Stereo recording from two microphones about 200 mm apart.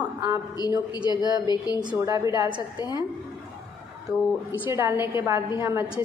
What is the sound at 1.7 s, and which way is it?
Speech, 20° right (ahead or behind).